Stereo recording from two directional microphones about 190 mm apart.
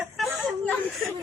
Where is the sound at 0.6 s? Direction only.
10° left (ahead or behind).